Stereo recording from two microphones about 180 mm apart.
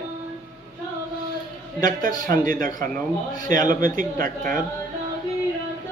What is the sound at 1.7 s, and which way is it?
A man's voice, 50° right (ahead or behind).